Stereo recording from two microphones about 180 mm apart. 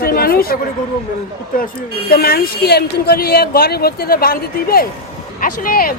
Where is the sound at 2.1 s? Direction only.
60° left (ahead or behind).